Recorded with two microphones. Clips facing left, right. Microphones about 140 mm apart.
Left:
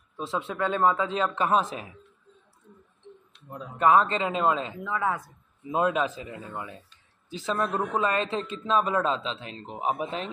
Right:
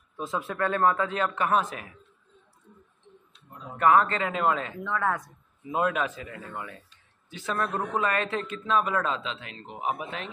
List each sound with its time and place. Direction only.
0.6 s a man's voice: 20° left (ahead or behind)
3.3 s a sound: 70° left (ahead or behind)
3.7 s a man's voice: 20° left (ahead or behind)
4.8 s speech: 5° left (ahead or behind)
5.7 s a man's voice: 25° left (ahead or behind)